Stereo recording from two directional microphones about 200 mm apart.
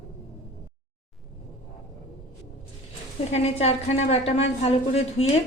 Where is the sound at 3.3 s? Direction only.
30° left (ahead or behind).